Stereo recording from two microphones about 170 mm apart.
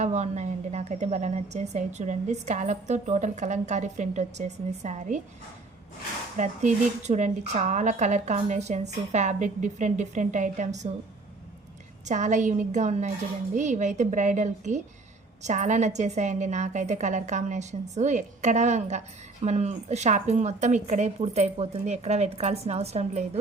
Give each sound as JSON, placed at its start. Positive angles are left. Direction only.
{"t": 0.0, "sound": "a woman's voice", "side_deg": -40}
{"t": 6.3, "sound": "a woman's voice", "side_deg": -45}
{"t": 12.0, "sound": "a woman's voice", "side_deg": -45}